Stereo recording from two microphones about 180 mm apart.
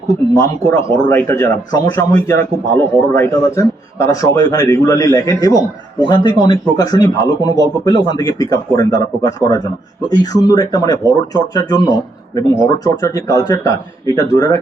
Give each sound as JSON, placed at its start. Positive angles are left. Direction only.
{"t": 0.3, "sound": "a man's voice", "side_deg": 15}